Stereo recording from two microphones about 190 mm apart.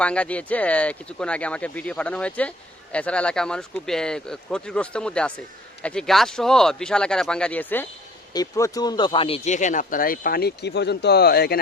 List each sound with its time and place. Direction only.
0.0 s speech: 5° left (ahead or behind); by 11.6 s 55° left (ahead or behind)